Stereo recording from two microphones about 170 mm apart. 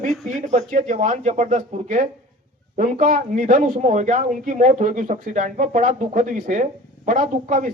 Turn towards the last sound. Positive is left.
turn(degrees=-50)  # may be behind; listen again after turning